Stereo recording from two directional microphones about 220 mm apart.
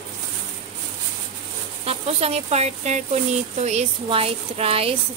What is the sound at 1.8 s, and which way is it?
Speech, 25° right (ahead or behind).